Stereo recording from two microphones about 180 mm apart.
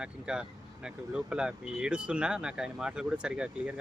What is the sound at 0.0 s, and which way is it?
Speech, 5° right (ahead or behind).